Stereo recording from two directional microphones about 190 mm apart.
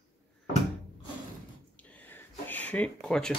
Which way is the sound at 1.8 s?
10° left (ahead or behind).